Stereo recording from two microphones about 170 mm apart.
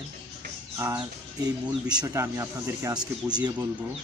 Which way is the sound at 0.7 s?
20° right (ahead or behind).